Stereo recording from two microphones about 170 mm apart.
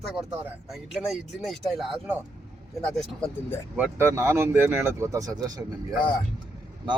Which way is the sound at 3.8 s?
10° right (ahead or behind).